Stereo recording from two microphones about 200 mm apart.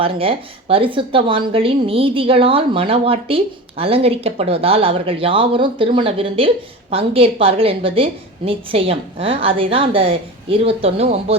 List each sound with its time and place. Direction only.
0.0 s a woman's voice: 25° right (ahead or behind)